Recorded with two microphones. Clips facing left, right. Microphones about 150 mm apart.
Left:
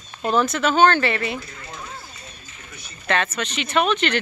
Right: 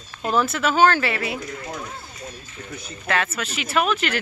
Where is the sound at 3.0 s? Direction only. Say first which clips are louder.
Left 1 dB; 5° right (ahead or behind).